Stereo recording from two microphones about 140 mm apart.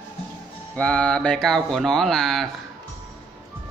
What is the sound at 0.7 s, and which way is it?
A man's voice, 10° left (ahead or behind).